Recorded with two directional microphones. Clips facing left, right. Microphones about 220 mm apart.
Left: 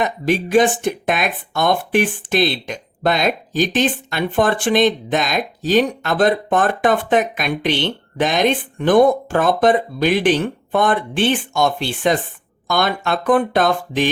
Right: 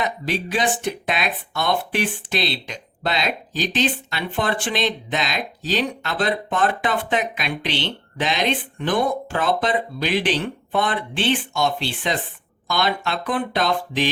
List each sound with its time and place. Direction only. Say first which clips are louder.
0.0 s speech: left 6 dB; 50° left (ahead or behind)